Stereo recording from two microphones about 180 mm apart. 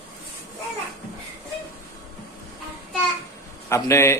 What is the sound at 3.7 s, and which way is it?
Speech, 15° left (ahead or behind).